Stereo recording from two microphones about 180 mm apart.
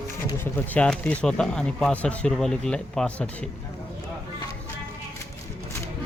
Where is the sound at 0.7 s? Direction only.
5° left (ahead or behind).